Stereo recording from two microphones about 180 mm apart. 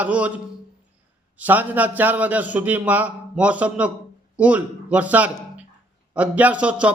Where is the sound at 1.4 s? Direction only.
10° right (ahead or behind).